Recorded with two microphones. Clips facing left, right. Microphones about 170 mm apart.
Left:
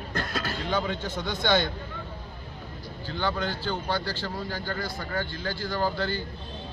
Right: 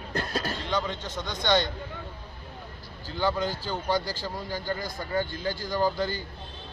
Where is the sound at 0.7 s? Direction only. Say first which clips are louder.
Left 3 dB; 10° left (ahead or behind).